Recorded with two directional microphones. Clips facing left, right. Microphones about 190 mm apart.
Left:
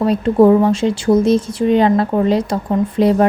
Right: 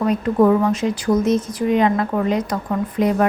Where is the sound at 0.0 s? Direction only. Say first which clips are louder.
Left 4 dB; 30° left (ahead or behind).